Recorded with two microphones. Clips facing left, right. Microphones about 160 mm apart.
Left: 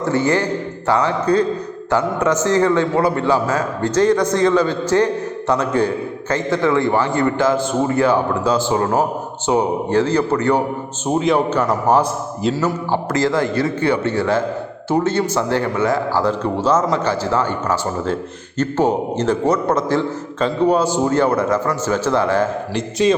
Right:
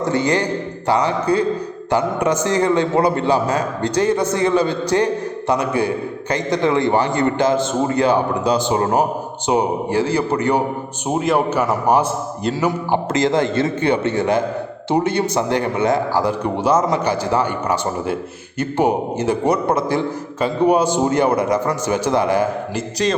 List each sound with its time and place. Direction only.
0.0 s a man's voice: 15° right (ahead or behind)